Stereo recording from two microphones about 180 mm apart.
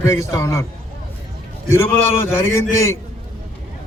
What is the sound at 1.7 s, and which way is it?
A man's voice, 15° left (ahead or behind).